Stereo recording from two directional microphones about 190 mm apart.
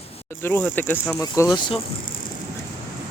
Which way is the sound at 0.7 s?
10° left (ahead or behind).